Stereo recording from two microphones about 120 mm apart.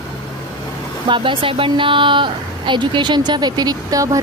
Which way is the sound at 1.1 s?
45° right (ahead or behind).